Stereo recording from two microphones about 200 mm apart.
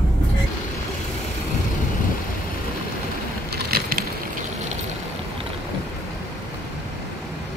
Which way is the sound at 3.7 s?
45° right (ahead or behind).